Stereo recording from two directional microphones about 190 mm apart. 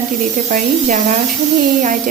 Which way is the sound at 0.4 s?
40° right (ahead or behind).